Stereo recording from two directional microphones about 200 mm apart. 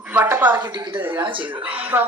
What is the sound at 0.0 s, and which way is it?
Speech, 10° right (ahead or behind).